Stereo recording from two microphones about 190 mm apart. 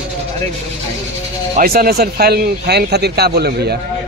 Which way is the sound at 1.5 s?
50° right (ahead or behind).